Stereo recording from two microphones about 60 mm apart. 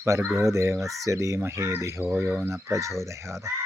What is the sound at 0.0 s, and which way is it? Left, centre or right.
Speech, right.